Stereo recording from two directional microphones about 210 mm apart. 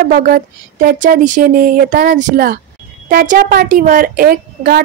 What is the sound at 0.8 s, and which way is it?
A woman's voice, 40° right (ahead or behind).